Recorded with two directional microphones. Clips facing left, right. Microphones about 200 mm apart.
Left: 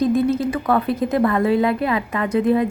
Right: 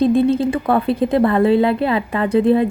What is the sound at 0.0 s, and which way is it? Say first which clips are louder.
Speech: right 3 dB; 30° right (ahead or behind).